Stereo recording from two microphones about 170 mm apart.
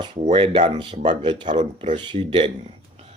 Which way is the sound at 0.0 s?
30° right (ahead or behind).